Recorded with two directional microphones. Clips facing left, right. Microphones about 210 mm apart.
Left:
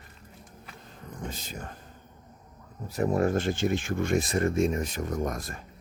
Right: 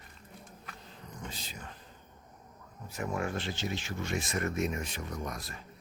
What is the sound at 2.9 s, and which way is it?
Speech, 35° left (ahead or behind).